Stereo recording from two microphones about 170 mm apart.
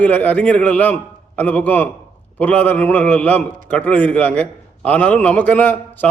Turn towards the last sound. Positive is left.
turn(degrees=10)  # may be behind; listen again after turning